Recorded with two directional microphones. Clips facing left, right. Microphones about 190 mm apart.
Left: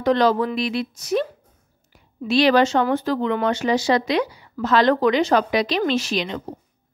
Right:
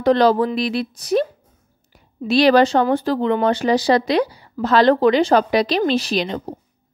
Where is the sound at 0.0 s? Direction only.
35° right (ahead or behind).